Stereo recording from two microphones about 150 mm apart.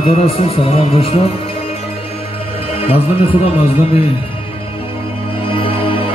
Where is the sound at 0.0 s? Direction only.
40° left (ahead or behind).